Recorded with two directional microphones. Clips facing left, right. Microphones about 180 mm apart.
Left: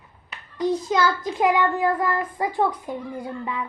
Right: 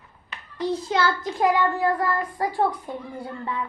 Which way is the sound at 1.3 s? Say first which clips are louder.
Even; 15° left (ahead or behind).